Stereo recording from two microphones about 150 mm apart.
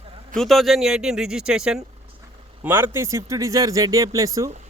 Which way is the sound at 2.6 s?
15° right (ahead or behind).